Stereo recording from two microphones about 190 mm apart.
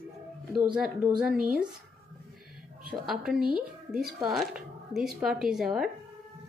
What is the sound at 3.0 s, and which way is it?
Speech, centre (ahead or behind).